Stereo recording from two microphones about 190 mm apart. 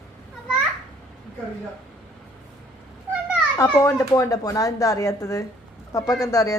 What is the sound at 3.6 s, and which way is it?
Speech, 15° left (ahead or behind).